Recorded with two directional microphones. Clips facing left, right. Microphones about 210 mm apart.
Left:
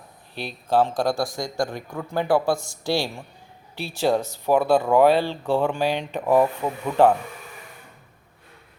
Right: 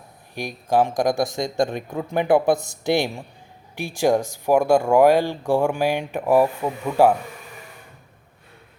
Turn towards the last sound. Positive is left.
turn(degrees=-10)  # may be behind; listen again after turning